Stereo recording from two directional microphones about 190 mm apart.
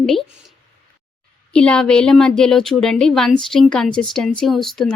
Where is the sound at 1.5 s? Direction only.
5° left (ahead or behind).